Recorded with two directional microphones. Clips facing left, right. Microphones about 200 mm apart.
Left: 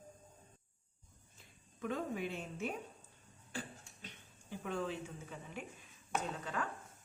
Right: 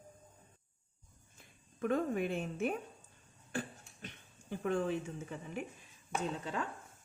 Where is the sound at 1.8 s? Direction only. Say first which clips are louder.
Right 6 dB; 55° right (ahead or behind).